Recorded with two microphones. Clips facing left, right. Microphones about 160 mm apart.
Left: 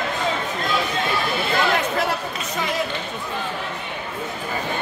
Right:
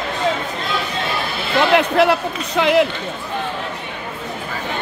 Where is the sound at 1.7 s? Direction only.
70° right (ahead or behind).